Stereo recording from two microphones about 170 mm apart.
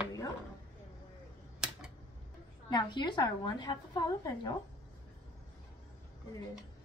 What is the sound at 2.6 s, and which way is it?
A woman's voice, 25° left (ahead or behind).